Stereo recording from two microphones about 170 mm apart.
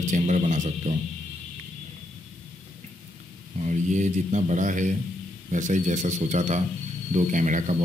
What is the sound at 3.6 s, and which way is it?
Speech, 45° right (ahead or behind).